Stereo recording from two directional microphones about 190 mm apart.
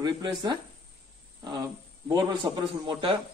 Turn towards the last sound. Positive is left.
turn(degrees=-25)  # may be behind; listen again after turning